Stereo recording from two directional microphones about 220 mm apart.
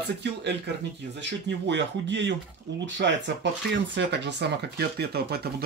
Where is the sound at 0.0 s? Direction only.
50° right (ahead or behind).